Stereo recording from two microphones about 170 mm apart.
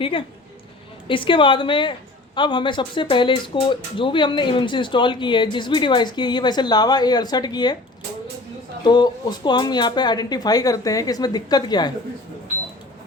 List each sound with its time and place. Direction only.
0.0 s a woman's voice: 30° left (ahead or behind)
8.8 s a woman's voice: 25° left (ahead or behind)